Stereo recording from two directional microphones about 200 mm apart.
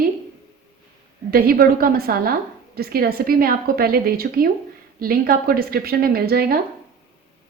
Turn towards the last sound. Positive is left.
turn(degrees=-50)  # may be behind; listen again after turning